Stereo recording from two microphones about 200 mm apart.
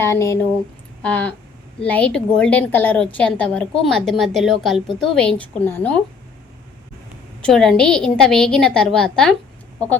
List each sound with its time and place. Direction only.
0.0 s a woman's voice: 15° left (ahead or behind)
7.4 s a woman's voice: centre (ahead or behind)